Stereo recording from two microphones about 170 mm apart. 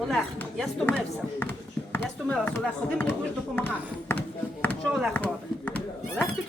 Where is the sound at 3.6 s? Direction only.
10° left (ahead or behind).